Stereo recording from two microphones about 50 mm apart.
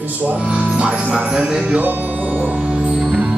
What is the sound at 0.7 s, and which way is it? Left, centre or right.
Music, right.